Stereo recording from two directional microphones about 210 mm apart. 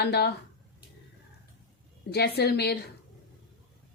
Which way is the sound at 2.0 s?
50° left (ahead or behind).